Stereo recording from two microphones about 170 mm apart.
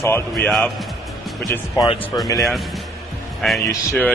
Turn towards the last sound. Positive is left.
turn(degrees=5)  # may be behind; listen again after turning